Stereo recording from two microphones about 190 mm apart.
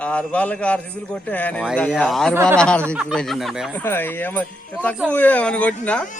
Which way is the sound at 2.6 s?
5° left (ahead or behind).